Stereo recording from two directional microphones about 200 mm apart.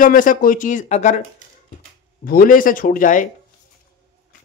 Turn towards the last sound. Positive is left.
turn(degrees=40)  # may be behind; listen again after turning